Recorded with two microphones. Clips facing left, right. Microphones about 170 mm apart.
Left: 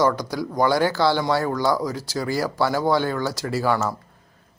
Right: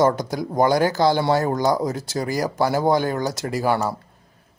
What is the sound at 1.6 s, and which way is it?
Speech, 20° right (ahead or behind).